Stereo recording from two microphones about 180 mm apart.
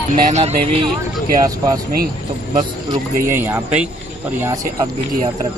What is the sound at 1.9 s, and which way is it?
Speech, 55° right (ahead or behind).